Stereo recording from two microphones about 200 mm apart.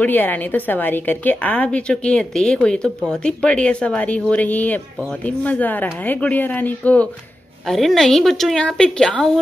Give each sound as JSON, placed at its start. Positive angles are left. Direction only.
{"t": 0.0, "sound": "a woman's voice", "side_deg": 10}